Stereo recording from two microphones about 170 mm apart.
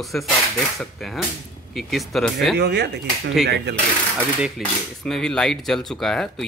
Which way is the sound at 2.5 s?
75° right (ahead or behind).